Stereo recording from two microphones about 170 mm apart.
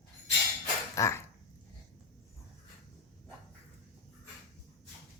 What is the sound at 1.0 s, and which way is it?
Speech, 15° left (ahead or behind).